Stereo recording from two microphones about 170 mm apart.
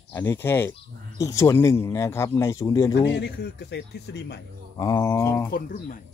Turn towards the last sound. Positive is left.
turn(degrees=55)  # may be behind; listen again after turning